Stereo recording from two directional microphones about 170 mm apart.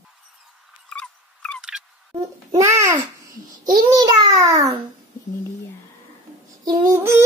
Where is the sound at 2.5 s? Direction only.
15° right (ahead or behind).